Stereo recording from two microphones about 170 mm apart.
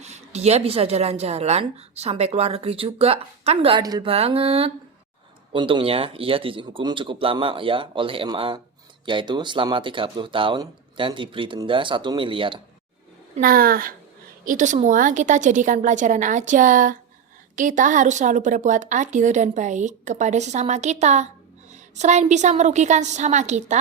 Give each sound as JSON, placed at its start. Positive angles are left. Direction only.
{"t": 0.0, "sound": "a woman's voice", "side_deg": -40}
{"t": 13.4, "sound": "a woman's voice", "side_deg": -60}
{"t": 14.4, "sound": "a woman's voice", "side_deg": -45}